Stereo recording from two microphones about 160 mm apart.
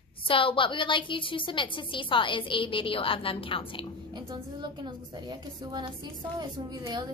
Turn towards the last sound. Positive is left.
turn(degrees=-25)  # may be behind; listen again after turning